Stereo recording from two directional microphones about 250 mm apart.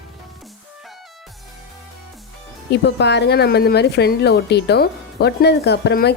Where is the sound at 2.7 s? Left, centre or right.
Left.